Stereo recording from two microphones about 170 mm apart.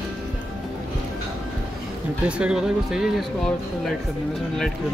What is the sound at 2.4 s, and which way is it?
Speech, 5° right (ahead or behind).